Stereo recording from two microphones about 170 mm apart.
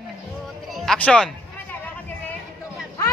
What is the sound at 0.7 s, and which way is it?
Music, centre (ahead or behind).